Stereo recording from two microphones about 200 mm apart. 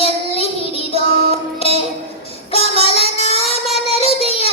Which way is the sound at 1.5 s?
30° left (ahead or behind).